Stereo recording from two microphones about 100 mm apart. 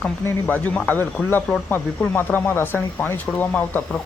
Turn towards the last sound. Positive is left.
turn(degrees=15)  # may be behind; listen again after turning